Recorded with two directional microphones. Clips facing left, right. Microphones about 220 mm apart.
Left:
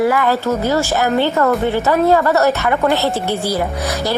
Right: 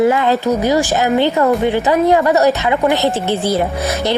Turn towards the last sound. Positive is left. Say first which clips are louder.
# right 2 dB
turn(degrees=-20)  # may be behind; listen again after turning